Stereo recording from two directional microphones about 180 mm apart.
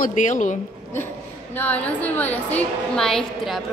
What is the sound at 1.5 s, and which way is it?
A woman's voice, 10° left (ahead or behind).